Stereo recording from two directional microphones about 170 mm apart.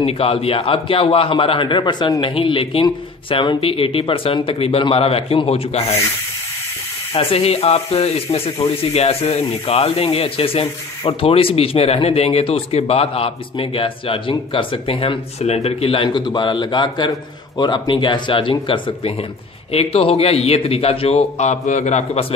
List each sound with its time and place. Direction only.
0.0 s speech: 35° left (ahead or behind)
7.2 s speech: 35° left (ahead or behind)